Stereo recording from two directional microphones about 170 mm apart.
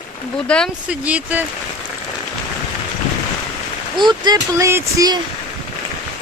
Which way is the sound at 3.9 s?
25° right (ahead or behind).